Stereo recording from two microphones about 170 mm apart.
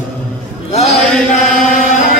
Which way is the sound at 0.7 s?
40° left (ahead or behind).